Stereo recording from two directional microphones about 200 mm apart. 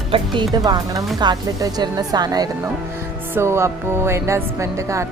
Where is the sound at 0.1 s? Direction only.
25° right (ahead or behind).